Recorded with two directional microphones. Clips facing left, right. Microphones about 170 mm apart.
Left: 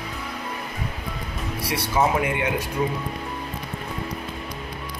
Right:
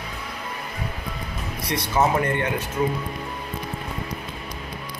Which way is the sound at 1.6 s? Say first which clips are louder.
Even; 10° left (ahead or behind).